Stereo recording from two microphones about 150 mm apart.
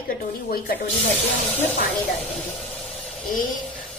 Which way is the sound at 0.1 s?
90° left.